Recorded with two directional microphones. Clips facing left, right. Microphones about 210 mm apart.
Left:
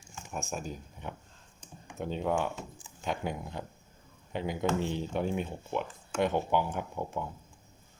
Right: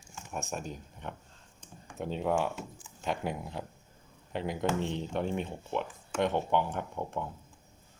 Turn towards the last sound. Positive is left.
turn(degrees=5)  # may be behind; listen again after turning